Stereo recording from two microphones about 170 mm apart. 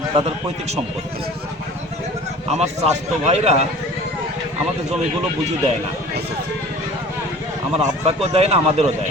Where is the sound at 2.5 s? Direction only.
40° right (ahead or behind).